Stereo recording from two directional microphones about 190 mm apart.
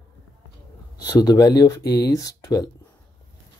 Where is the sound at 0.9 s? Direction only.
20° left (ahead or behind).